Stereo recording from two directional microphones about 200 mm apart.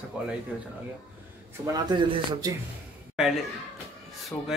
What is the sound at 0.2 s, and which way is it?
Speech, 5° right (ahead or behind).